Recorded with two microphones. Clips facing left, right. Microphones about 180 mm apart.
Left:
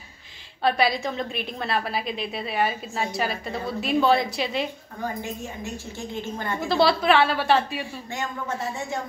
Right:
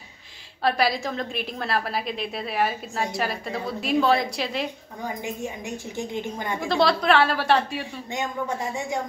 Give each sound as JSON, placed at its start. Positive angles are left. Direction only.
{"t": 0.6, "sound": "a woman's voice", "side_deg": 0}
{"t": 5.0, "sound": "a woman's voice", "side_deg": -15}
{"t": 6.6, "sound": "a woman's voice", "side_deg": 0}
{"t": 8.1, "sound": "a woman's voice", "side_deg": -15}